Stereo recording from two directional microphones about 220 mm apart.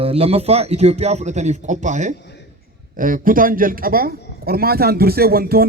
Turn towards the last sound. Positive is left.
turn(degrees=-45)  # may be behind; listen again after turning